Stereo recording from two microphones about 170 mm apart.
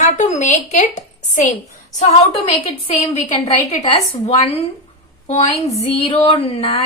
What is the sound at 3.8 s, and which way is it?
A woman's voice, 35° left (ahead or behind).